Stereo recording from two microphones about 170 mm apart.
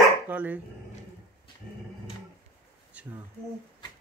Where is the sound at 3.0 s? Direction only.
10° right (ahead or behind).